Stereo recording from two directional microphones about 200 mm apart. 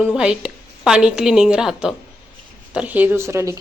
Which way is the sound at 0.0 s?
5° right (ahead or behind).